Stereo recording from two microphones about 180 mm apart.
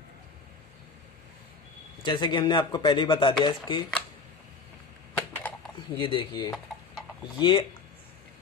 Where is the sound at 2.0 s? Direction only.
25° left (ahead or behind).